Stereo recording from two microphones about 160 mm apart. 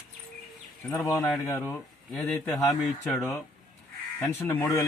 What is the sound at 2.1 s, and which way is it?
Speech, 5° left (ahead or behind).